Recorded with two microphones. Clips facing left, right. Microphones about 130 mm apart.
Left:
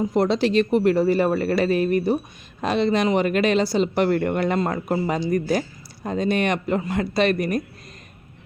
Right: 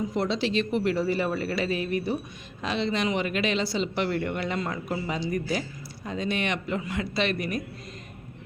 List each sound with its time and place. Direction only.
0.1 s a woman's voice: 50° left (ahead or behind)